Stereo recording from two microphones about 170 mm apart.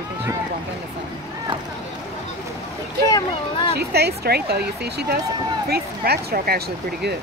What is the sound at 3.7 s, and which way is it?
Speech, 70° right (ahead or behind).